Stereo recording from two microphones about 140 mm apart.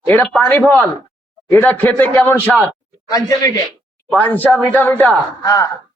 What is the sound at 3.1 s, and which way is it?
Speech, 25° left (ahead or behind).